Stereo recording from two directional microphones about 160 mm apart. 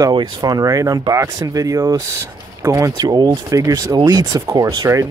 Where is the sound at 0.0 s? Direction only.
25° right (ahead or behind).